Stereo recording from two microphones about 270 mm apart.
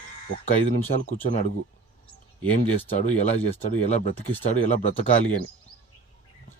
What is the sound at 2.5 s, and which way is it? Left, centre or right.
Speech, left.